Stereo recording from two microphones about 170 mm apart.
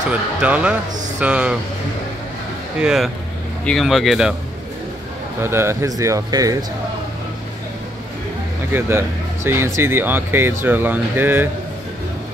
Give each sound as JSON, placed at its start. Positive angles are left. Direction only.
{"t": 0.1, "sound": "speech", "side_deg": -10}
{"t": 2.8, "sound": "speech", "side_deg": -5}
{"t": 5.4, "sound": "speech", "side_deg": -15}
{"t": 8.7, "sound": "speech", "side_deg": -15}